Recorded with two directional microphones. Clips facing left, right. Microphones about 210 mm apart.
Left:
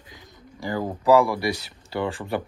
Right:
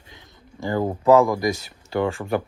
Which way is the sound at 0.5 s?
20° right (ahead or behind).